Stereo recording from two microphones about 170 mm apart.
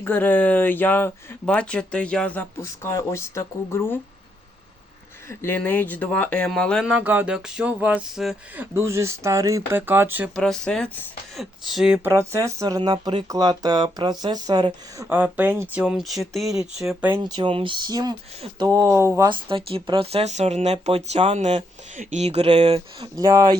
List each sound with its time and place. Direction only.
0.0 s speech: 10° left (ahead or behind)
5.3 s speech: 15° left (ahead or behind); by 8.6 s 5° right (ahead or behind)
8.7 s speech: 15° right (ahead or behind)
10.3 s speech: 5° left (ahead or behind)
12.0 s speech: 15° right (ahead or behind)
17.1 s speech: 20° right (ahead or behind)
19.3 s speech: 30° right (ahead or behind)
23.1 s speech: 20° right (ahead or behind)